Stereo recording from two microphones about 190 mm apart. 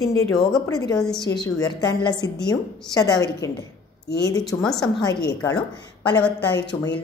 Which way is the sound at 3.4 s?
15° left (ahead or behind).